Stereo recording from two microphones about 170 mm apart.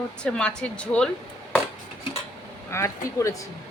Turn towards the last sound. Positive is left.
turn(degrees=20)  # may be behind; listen again after turning